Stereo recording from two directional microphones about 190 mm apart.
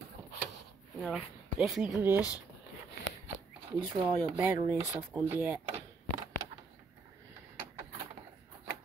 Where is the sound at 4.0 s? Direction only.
10° right (ahead or behind).